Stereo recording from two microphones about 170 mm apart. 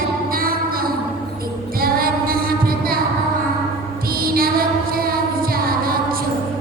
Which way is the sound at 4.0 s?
60° right (ahead or behind).